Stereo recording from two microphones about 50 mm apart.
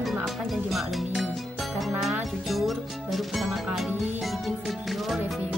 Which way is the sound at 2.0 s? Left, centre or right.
Centre.